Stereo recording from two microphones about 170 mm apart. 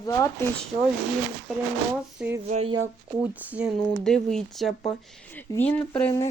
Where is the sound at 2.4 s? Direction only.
45° right (ahead or behind).